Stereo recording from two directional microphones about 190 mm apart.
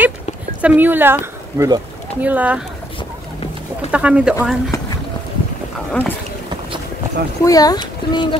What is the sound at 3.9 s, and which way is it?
Speech, 5° right (ahead or behind).